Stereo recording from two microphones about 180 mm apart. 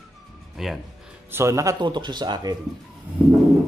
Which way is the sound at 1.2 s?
15° right (ahead or behind).